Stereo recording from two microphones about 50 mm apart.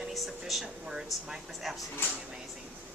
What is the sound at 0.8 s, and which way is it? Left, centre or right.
Speech, centre.